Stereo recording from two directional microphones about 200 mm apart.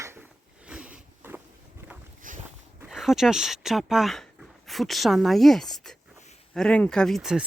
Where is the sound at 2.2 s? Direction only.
40° right (ahead or behind).